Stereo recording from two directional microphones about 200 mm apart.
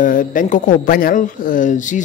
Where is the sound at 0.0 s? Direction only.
40° left (ahead or behind).